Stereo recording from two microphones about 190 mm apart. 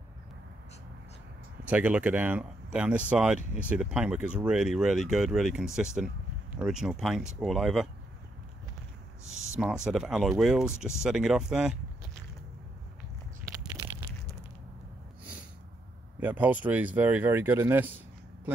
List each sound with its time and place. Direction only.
1.6 s speech: 10° right (ahead or behind)
9.3 s speech: 5° right (ahead or behind)
13.5 s a sound: 20° right (ahead or behind)
16.2 s speech: 10° right (ahead or behind)